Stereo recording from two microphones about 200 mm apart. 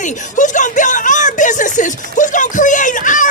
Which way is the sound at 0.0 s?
40° left (ahead or behind).